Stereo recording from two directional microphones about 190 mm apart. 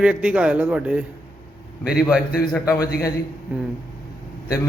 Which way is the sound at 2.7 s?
15° left (ahead or behind).